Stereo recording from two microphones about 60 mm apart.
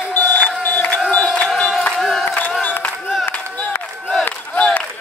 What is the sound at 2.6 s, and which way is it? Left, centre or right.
Crowd, left.